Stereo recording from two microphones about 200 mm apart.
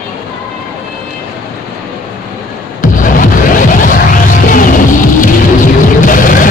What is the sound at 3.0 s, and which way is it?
Music, 40° left (ahead or behind).